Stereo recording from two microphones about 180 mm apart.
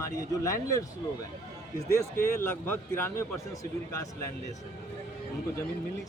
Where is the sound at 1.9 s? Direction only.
15° left (ahead or behind).